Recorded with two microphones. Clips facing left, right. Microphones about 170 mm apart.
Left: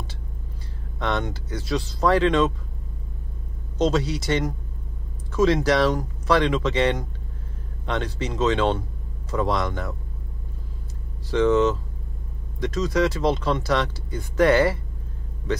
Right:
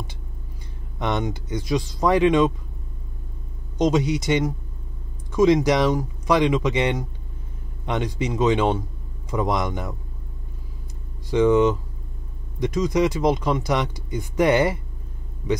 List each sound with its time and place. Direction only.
0.9 s speech: 15° right (ahead or behind)
3.7 s speech: 15° right (ahead or behind)
11.2 s speech: 15° right (ahead or behind)